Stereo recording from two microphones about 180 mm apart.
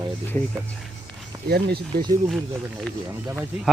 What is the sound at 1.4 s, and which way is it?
Speech, 60° right (ahead or behind).